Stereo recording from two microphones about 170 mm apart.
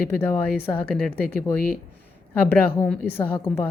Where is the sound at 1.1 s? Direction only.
60° left (ahead or behind).